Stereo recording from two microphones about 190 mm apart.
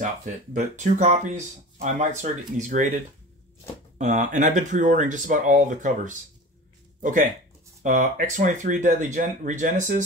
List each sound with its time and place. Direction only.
0.0 s speech: 40° right (ahead or behind)
4.0 s speech: 40° right (ahead or behind)